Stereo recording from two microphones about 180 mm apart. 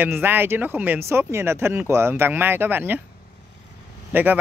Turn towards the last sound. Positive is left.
turn(degrees=-10)  # may be behind; listen again after turning